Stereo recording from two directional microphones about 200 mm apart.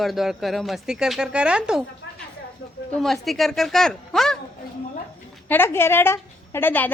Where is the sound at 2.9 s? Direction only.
Centre (ahead or behind).